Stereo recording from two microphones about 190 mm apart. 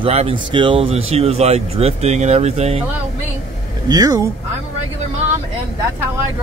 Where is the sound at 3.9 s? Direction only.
20° right (ahead or behind).